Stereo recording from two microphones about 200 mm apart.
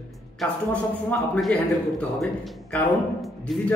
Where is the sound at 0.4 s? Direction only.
Centre (ahead or behind).